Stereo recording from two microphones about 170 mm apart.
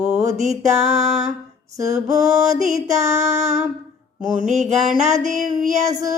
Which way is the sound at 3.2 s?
45° right (ahead or behind).